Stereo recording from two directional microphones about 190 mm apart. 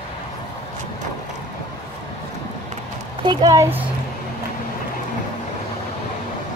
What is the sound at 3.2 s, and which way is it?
Speech, 20° right (ahead or behind).